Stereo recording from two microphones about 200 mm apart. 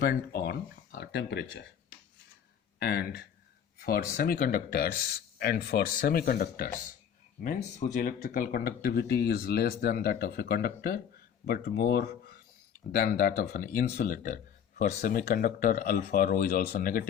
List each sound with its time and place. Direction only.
0.0 s speech: 50° left (ahead or behind)
2.7 s speech: 50° left (ahead or behind)